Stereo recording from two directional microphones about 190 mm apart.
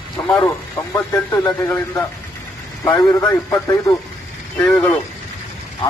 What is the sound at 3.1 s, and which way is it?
Speech, 15° left (ahead or behind).